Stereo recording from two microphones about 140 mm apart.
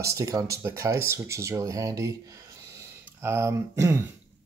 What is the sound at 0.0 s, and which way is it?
Speech, 20° right (ahead or behind).